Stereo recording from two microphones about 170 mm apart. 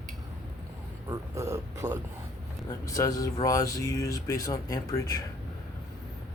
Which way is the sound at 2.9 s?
20° left (ahead or behind).